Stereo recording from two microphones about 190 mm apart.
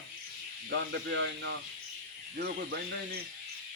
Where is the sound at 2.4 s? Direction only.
55° right (ahead or behind).